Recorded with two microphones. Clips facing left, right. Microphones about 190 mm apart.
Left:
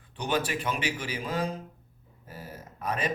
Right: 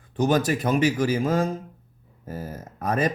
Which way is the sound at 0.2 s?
40° right (ahead or behind).